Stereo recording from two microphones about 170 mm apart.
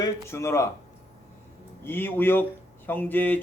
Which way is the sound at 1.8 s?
10° left (ahead or behind).